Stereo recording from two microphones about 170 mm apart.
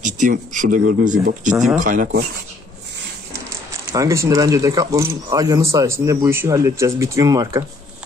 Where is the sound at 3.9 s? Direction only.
20° right (ahead or behind).